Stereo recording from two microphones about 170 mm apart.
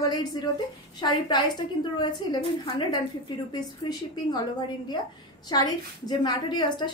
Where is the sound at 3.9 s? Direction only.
25° left (ahead or behind).